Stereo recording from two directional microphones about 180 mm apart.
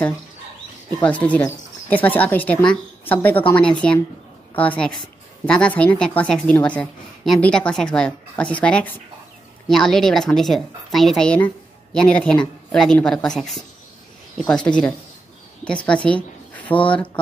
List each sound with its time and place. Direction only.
0.9 s a woman's voice: 10° left (ahead or behind)